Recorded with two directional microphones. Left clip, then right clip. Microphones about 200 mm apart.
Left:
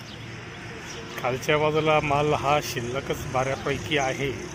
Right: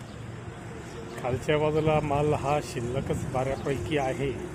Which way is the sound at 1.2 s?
Centre (ahead or behind).